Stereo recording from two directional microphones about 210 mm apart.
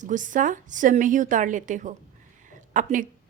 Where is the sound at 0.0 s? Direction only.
35° right (ahead or behind).